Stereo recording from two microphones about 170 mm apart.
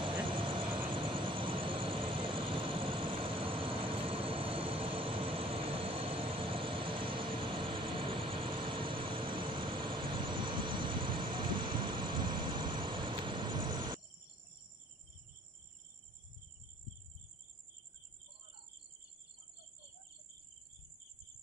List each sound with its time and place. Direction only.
0.0 s vehicle: 30° right (ahead or behind)